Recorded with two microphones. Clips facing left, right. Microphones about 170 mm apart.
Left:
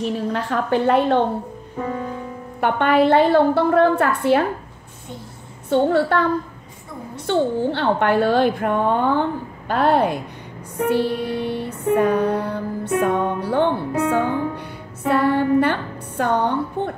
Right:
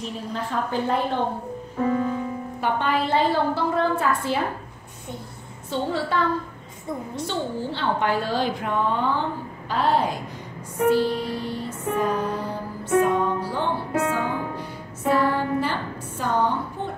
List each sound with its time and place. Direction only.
0.0 s a woman's voice: 70° left (ahead or behind)
2.6 s a woman's voice: 60° left (ahead or behind)
5.7 s a woman's voice: 60° left (ahead or behind)
7.2 s a woman's voice: 60° left (ahead or behind)
11.9 s music: 65° left (ahead or behind)